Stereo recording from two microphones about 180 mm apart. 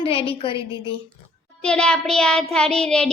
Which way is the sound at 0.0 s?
30° left (ahead or behind).